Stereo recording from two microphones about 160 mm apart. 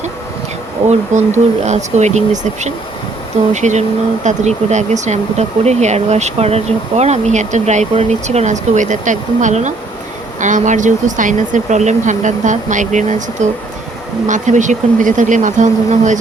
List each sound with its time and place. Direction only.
0.9 s speech: 50° right (ahead or behind)